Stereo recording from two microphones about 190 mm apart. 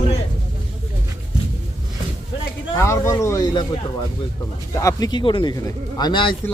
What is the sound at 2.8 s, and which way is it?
Speech, 15° left (ahead or behind).